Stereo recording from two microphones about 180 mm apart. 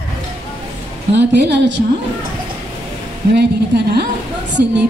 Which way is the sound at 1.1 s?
75° right (ahead or behind).